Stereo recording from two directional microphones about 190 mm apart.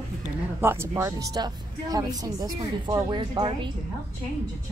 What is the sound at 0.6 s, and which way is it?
A woman's voice, 15° right (ahead or behind).